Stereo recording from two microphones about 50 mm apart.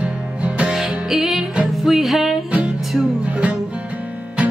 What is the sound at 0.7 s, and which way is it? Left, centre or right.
Music, centre.